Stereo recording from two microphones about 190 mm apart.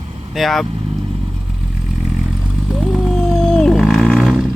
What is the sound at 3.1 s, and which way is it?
Wild animals, centre (ahead or behind).